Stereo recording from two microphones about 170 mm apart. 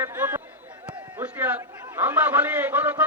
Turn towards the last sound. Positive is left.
turn(degrees=-10)  # may be behind; listen again after turning